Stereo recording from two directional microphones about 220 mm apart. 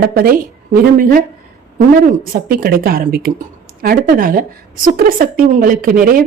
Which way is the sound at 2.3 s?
40° right (ahead or behind).